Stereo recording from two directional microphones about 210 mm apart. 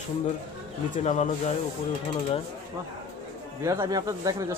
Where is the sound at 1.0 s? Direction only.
35° left (ahead or behind).